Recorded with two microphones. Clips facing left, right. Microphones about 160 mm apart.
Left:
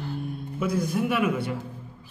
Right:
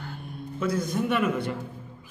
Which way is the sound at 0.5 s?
10° left (ahead or behind).